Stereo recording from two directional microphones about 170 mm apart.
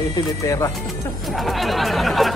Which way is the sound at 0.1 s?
20° left (ahead or behind).